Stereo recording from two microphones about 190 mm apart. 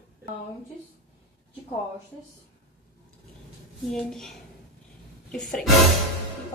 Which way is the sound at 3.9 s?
Centre (ahead or behind).